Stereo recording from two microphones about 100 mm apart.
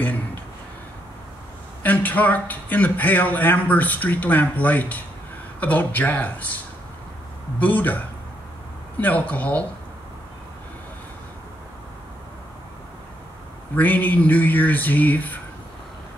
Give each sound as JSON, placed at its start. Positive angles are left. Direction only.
{"t": 0.0, "sound": "a sound", "side_deg": 15}
{"t": 1.8, "sound": "a man's voice", "side_deg": 15}
{"t": 7.5, "sound": "a man's voice", "side_deg": 15}
{"t": 9.0, "sound": "a man's voice", "side_deg": 15}
{"t": 13.7, "sound": "a man's voice", "side_deg": 15}